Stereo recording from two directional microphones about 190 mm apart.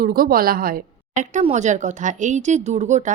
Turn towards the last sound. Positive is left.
turn(degrees=-40)  # may be behind; listen again after turning